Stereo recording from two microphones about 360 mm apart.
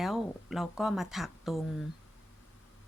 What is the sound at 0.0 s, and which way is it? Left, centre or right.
Speech, centre.